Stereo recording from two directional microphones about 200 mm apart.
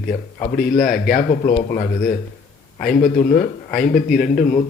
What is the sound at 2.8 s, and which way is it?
A man's voice, 45° left (ahead or behind).